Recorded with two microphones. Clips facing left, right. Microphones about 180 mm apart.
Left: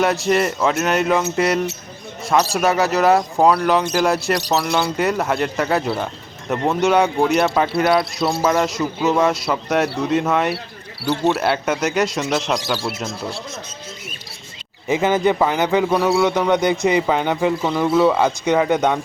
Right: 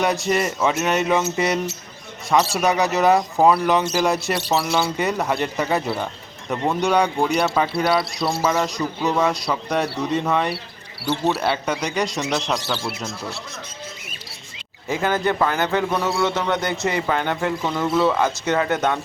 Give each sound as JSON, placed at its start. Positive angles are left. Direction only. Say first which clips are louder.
{"t": 0.3, "sound": "a man's voice", "louder": "left 3 dB", "side_deg": 0}
{"t": 14.8, "sound": "speech", "louder": "left 4 dB", "side_deg": 20}